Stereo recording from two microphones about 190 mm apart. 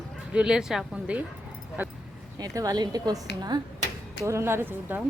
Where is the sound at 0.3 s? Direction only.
5° right (ahead or behind).